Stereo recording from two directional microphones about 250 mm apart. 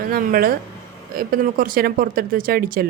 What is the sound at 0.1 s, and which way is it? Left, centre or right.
Speech, right.